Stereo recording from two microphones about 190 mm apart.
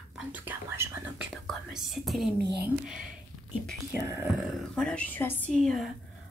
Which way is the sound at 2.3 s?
60° right (ahead or behind).